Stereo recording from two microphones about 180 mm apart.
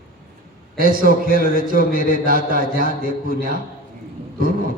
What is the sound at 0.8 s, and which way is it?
A man's voice, 50° right (ahead or behind).